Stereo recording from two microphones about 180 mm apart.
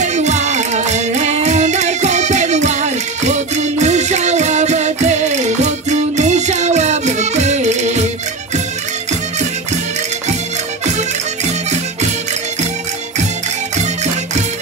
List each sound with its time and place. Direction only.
0.0 s music: 40° right (ahead or behind)
13.7 s music: 40° right (ahead or behind)